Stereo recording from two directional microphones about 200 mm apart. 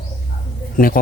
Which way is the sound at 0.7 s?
45° left (ahead or behind).